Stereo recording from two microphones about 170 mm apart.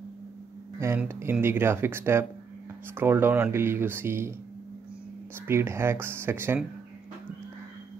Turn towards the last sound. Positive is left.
turn(degrees=-15)  # may be behind; listen again after turning